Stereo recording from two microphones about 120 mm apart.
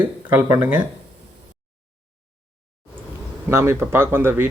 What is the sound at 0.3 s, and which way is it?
Speech, 25° right (ahead or behind).